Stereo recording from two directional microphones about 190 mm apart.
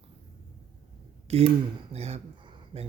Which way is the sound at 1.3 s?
35° right (ahead or behind).